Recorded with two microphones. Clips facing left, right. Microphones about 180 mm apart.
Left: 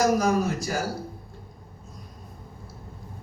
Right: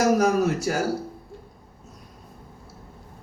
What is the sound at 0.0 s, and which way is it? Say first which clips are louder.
Speech: right 2 dB; 70° right (ahead or behind).